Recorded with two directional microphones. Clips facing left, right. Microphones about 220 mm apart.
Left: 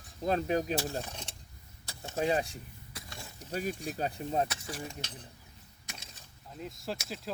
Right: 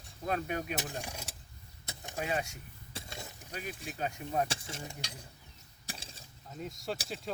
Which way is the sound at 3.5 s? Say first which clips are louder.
Left 8 dB; 40° left (ahead or behind).